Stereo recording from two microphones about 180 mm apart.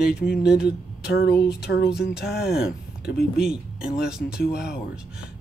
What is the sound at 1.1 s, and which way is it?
Speech, 65° left (ahead or behind).